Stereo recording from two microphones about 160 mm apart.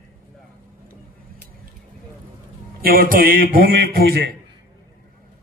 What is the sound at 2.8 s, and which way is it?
A man's voice, 65° right (ahead or behind).